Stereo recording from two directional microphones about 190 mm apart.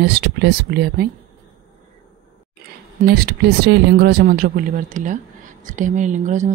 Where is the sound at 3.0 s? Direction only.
55° right (ahead or behind).